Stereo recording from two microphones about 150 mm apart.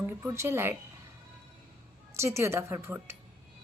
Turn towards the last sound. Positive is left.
turn(degrees=-15)  # may be behind; listen again after turning